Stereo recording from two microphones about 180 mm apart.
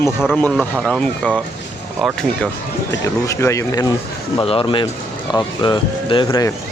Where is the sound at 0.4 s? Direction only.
5° left (ahead or behind).